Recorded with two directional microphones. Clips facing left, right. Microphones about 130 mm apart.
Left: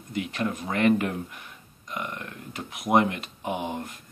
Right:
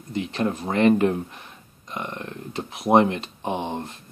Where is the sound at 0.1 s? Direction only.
30° right (ahead or behind).